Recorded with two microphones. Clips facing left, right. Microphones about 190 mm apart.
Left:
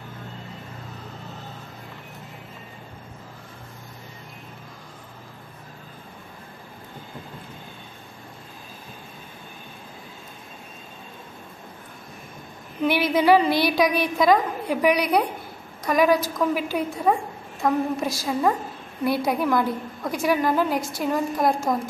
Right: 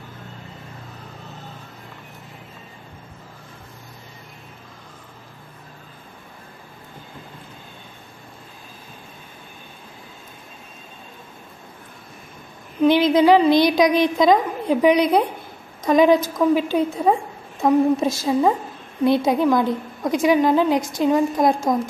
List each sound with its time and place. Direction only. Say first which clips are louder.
12.8 s a woman's voice: right 5 dB; 15° right (ahead or behind)